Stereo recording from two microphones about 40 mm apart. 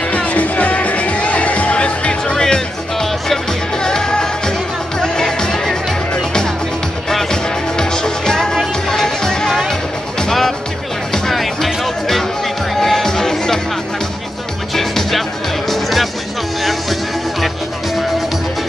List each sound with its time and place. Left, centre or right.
0.1 s music: left
2.4 s music: centre
11.2 s music: centre
14.7 s music: centre